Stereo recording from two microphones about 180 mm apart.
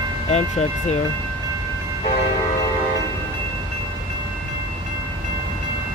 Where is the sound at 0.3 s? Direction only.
40° left (ahead or behind).